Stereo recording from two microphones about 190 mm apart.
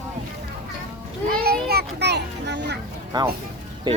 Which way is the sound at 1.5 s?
55° right (ahead or behind).